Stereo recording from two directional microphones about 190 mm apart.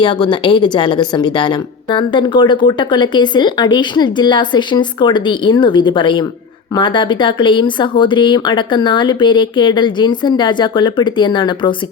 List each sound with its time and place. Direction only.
0.0 s a woman's voice: 25° left (ahead or behind)